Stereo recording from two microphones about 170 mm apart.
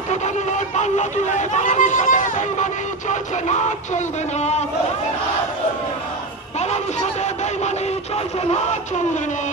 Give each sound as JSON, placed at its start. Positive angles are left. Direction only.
{"t": 0.1, "sound": "speech", "side_deg": 45}
{"t": 6.6, "sound": "music", "side_deg": 40}